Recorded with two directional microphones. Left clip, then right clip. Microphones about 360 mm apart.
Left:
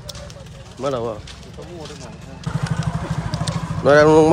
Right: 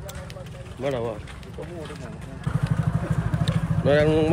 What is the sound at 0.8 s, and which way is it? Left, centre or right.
Speech, centre.